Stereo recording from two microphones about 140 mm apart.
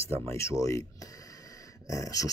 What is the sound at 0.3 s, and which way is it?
Speech, 20° left (ahead or behind).